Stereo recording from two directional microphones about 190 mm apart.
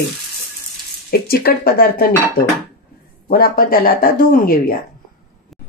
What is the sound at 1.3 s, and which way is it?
Speech, 55° left (ahead or behind).